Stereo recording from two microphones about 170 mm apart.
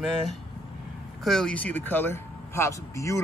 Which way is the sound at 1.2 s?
5° left (ahead or behind).